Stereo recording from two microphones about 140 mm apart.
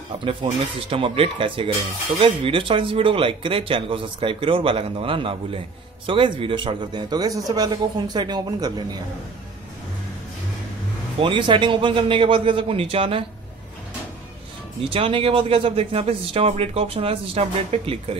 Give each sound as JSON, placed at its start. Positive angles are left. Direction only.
{"t": 0.2, "sound": "speech", "side_deg": -40}
{"t": 11.1, "sound": "speech", "side_deg": -35}
{"t": 14.9, "sound": "speech", "side_deg": -40}